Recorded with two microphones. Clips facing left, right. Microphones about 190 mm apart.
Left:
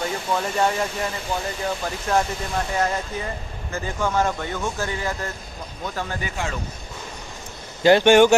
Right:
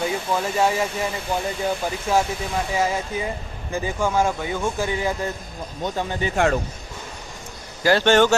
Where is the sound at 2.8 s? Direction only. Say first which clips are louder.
Right 2 dB; 10° right (ahead or behind).